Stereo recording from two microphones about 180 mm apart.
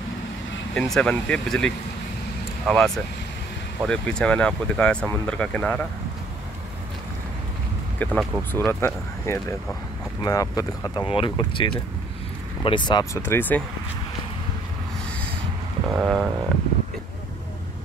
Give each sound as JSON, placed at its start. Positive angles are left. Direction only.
{"t": 0.7, "sound": "speech", "side_deg": 5}
{"t": 8.0, "sound": "speech", "side_deg": 10}
{"t": 13.2, "sound": "speech", "side_deg": 10}
{"t": 15.9, "sound": "speech", "side_deg": 0}